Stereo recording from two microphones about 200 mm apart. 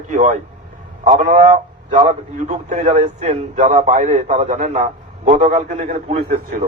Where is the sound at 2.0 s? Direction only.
25° right (ahead or behind).